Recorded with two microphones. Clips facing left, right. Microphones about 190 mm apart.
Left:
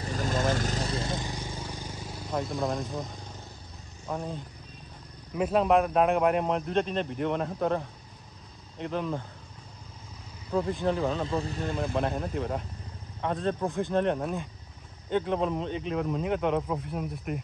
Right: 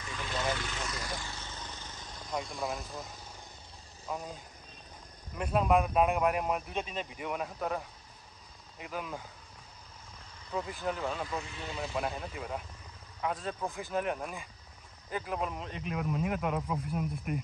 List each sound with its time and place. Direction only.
0.0 s vehicle: 40° left (ahead or behind); by 2.2 s 10° left (ahead or behind)
2.3 s speech: centre (ahead or behind)
5.3 s speech: centre (ahead or behind)
10.5 s speech: centre (ahead or behind)
11.2 s speech: 35° left (ahead or behind); by 12.0 s 50° left (ahead or behind)
12.0 s speech: centre (ahead or behind)